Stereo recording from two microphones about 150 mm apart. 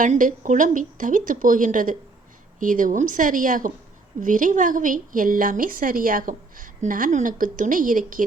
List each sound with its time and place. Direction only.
0.0 s a woman's voice: 60° right (ahead or behind)